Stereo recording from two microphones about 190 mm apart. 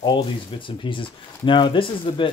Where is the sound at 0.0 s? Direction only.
25° left (ahead or behind).